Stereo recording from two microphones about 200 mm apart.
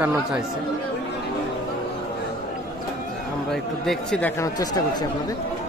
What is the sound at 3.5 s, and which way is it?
Speech, 5° left (ahead or behind).